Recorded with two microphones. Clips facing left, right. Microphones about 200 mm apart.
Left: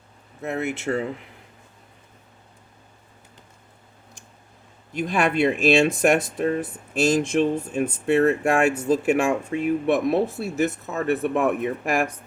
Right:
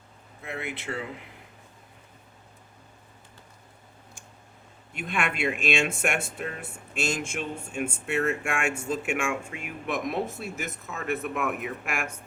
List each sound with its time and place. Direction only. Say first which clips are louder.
0.4 s speech: left 9 dB; 45° left (ahead or behind)
4.9 s speech: left 9 dB; 35° left (ahead or behind)